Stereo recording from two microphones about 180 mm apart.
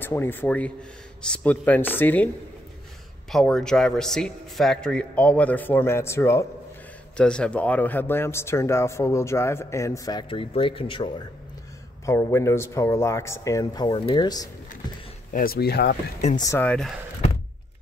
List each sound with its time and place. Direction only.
0.0 s speech: 10° left (ahead or behind)
3.3 s a man's voice: centre (ahead or behind); by 11.2 s 25° left (ahead or behind)
12.1 s speech: 15° left (ahead or behind)
15.3 s speech: 55° left (ahead or behind)
16.3 s speech: 20° left (ahead or behind)
16.6 s a man's voice: 5° left (ahead or behind)